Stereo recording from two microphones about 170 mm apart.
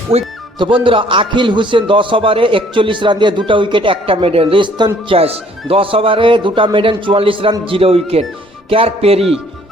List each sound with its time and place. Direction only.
0.1 s a man's voice: 35° right (ahead or behind)